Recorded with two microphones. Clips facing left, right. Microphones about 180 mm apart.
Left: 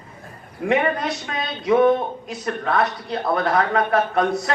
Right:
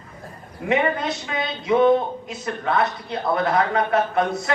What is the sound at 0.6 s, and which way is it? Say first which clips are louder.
A man's voice: left 1 dB; 25° right (ahead or behind).